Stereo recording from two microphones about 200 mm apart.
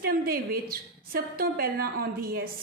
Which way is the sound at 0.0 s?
45° right (ahead or behind).